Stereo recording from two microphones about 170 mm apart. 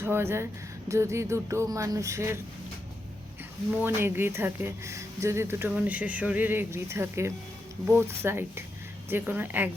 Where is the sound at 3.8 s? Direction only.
15° right (ahead or behind).